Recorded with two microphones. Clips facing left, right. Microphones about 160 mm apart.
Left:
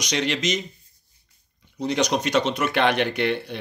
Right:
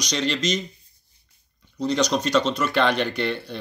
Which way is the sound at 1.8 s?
55° left (ahead or behind).